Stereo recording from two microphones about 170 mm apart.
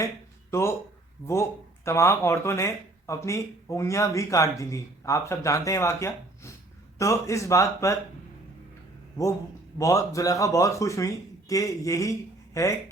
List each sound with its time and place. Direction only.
0.5 s speech: 15° left (ahead or behind)
9.2 s speech: 20° left (ahead or behind)